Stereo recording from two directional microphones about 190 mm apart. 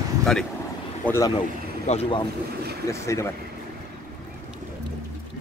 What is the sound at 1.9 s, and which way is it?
Speech, 30° left (ahead or behind).